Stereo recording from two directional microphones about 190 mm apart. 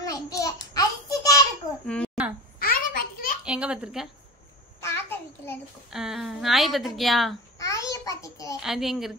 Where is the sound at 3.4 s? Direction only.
5° right (ahead or behind).